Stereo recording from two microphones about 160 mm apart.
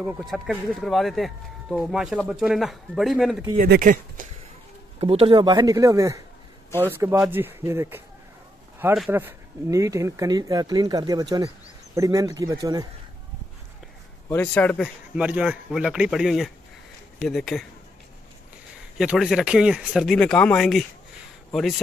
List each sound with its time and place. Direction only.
0.0 s speech: 5° right (ahead or behind)
3.5 s speech: 70° right (ahead or behind)
3.9 s speech: 55° right (ahead or behind)
5.0 s speech: 35° right (ahead or behind); by 8.0 s 15° right (ahead or behind)
9.1 s speech: 15° right (ahead or behind)
14.3 s a man's voice: 10° left (ahead or behind)
15.1 s speech: 5° right (ahead or behind)
18.9 s speech: 5° right (ahead or behind)